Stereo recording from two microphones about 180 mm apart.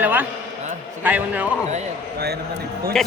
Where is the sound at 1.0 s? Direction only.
10° right (ahead or behind).